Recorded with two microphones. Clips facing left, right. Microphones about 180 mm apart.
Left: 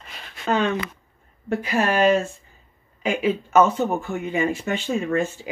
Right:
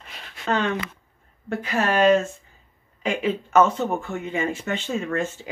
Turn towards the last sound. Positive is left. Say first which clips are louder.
# left 3 dB
turn(degrees=10)  # may be behind; listen again after turning